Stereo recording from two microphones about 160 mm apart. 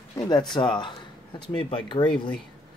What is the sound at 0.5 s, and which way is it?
Speech, 30° left (ahead or behind).